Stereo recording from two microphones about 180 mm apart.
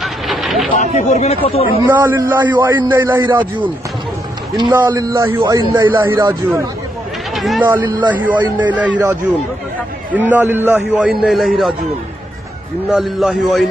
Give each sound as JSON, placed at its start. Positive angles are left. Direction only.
{"t": 0.0, "sound": "vehicle", "side_deg": 0}
{"t": 0.9, "sound": "speech", "side_deg": 40}
{"t": 1.9, "sound": "a man's voice", "side_deg": -10}
{"t": 3.2, "sound": "speech", "side_deg": -25}
{"t": 4.7, "sound": "a man's voice", "side_deg": -15}
{"t": 7.3, "sound": "speech", "side_deg": 0}
{"t": 7.8, "sound": "speech", "side_deg": -25}
{"t": 8.1, "sound": "a man's voice", "side_deg": -10}
{"t": 12.9, "sound": "a man's voice", "side_deg": 0}